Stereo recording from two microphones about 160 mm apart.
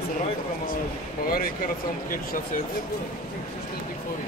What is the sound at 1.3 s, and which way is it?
Speech, 65° left (ahead or behind).